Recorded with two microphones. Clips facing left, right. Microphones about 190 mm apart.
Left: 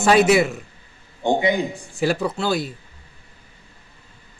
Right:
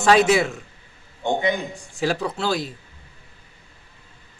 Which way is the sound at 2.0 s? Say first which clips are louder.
Left 2 dB; 5° left (ahead or behind).